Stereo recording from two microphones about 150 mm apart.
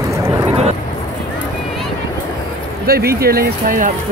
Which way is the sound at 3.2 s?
90° right.